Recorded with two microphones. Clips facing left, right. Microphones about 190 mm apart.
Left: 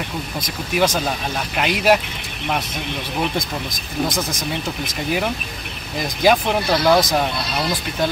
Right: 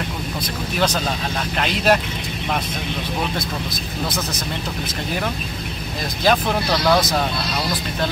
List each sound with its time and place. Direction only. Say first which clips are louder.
0.7 s speech: left 3 dB; 10° left (ahead or behind)
3.3 s speech: left 1 dB; 15° left (ahead or behind)
6.2 s speech: left 2 dB; 10° left (ahead or behind)